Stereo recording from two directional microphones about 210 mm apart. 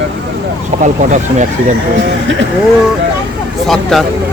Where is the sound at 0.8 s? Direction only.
35° right (ahead or behind).